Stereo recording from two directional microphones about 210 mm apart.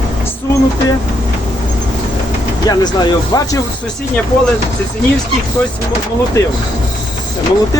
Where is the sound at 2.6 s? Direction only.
20° left (ahead or behind).